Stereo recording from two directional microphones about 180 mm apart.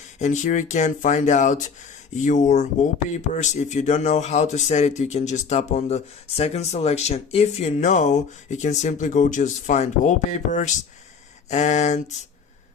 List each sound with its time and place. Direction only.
0.2 s speech: 45° left (ahead or behind)